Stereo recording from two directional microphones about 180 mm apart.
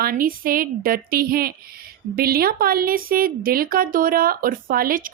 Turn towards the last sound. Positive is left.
turn(degrees=-50)  # may be behind; listen again after turning